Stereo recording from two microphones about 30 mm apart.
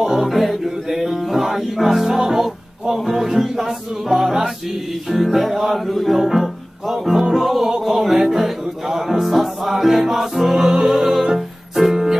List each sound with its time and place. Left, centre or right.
0.0 s music: centre
0.3 s music: centre
5.1 s music: centre
10.7 s music: right